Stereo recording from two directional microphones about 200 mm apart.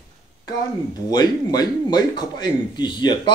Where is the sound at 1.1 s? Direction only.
20° left (ahead or behind).